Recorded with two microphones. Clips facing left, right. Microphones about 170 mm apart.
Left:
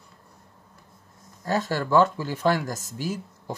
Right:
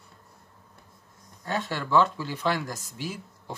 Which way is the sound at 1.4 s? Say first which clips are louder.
Left 5 dB; 40° left (ahead or behind).